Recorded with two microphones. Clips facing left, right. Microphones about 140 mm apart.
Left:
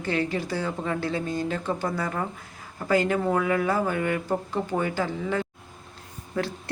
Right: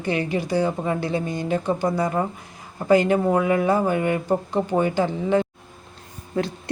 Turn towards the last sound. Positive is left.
turn(degrees=-20)  # may be behind; listen again after turning